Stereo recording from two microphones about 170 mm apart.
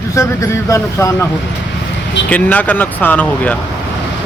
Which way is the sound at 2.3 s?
10° left (ahead or behind).